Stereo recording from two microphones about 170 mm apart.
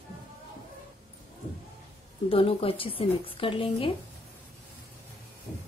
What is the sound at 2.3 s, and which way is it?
A woman's voice, 35° left (ahead or behind).